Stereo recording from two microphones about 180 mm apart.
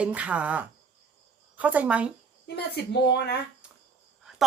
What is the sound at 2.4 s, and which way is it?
Speech, 65° left (ahead or behind).